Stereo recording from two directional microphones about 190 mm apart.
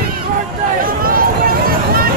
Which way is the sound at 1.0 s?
50° right (ahead or behind).